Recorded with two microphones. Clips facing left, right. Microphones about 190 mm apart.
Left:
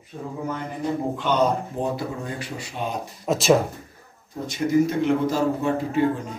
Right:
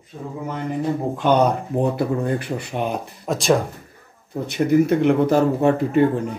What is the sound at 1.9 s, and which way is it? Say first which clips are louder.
Speech: right 8 dB; 60° right (ahead or behind).